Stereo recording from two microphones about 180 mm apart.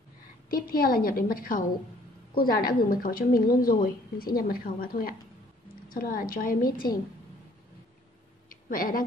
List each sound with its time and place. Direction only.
0.5 s a woman's voice: 55° left (ahead or behind)
8.6 s speech: 50° left (ahead or behind)